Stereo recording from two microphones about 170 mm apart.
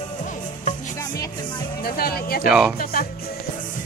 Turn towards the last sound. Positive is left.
turn(degrees=55)  # may be behind; listen again after turning